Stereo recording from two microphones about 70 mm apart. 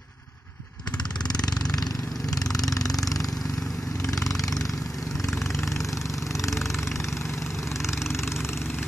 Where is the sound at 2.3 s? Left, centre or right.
Left.